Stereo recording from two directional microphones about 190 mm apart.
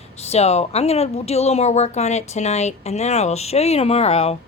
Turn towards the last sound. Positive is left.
turn(degrees=35)  # may be behind; listen again after turning